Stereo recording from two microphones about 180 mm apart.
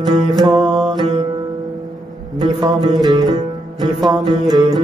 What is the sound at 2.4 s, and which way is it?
Music, 25° right (ahead or behind).